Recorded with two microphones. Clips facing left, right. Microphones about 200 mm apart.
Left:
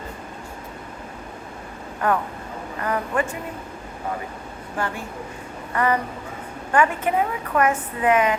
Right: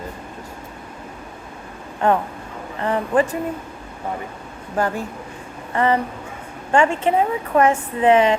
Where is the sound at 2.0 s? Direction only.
25° right (ahead or behind).